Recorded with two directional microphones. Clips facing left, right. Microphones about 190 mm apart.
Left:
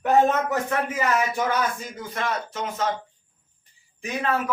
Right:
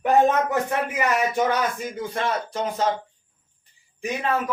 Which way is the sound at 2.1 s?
30° right (ahead or behind).